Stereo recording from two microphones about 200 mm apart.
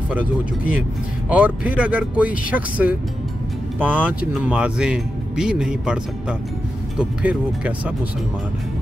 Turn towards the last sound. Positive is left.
turn(degrees=-5)  # may be behind; listen again after turning